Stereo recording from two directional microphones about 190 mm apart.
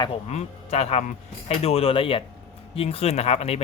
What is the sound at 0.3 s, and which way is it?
Speech, 35° left (ahead or behind).